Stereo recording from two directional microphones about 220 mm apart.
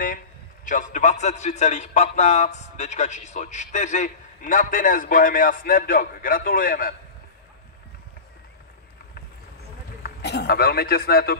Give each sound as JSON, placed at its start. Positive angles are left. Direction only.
{"t": 0.7, "sound": "a man's voice", "side_deg": 35}
{"t": 10.0, "sound": "speech", "side_deg": 50}